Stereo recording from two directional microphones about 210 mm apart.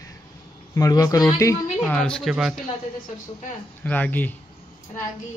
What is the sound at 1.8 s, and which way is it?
Speech, 5° left (ahead or behind).